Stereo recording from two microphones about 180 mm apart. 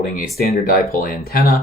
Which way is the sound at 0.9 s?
55° left (ahead or behind).